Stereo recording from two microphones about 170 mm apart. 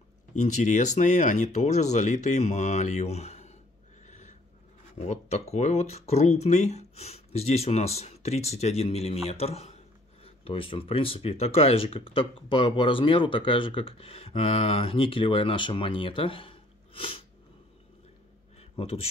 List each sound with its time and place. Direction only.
0.3 s speech: 45° left (ahead or behind)
4.0 s owl: 45° left (ahead or behind)
4.9 s speech: 40° left (ahead or behind)
18.6 s a sound: 35° left (ahead or behind)